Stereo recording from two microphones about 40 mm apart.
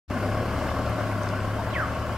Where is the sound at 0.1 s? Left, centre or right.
Centre.